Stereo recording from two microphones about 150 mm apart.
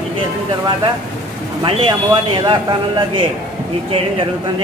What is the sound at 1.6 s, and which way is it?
A man's voice, 35° right (ahead or behind).